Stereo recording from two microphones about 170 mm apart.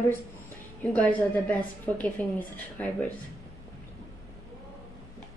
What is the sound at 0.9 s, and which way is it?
A woman's voice, 10° left (ahead or behind).